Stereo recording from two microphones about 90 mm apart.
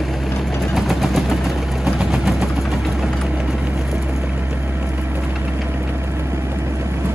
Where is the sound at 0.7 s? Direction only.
Centre (ahead or behind).